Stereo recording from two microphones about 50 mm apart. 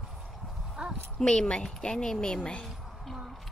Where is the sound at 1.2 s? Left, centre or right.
Centre.